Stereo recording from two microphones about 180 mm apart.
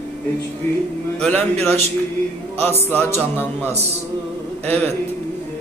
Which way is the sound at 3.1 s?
10° left (ahead or behind).